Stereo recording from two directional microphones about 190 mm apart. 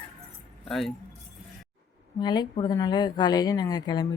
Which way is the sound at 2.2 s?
20° left (ahead or behind).